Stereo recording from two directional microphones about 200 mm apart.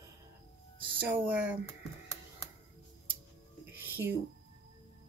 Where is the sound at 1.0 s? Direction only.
10° right (ahead or behind).